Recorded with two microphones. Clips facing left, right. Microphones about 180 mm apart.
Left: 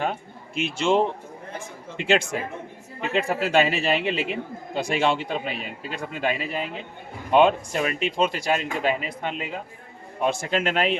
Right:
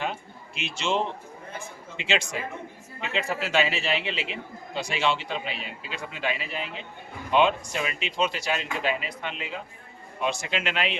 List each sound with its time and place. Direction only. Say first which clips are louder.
0.0 s a man's voice: left 4 dB; 50° left (ahead or behind)